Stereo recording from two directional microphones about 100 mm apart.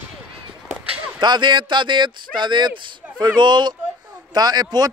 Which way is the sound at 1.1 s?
50° right (ahead or behind).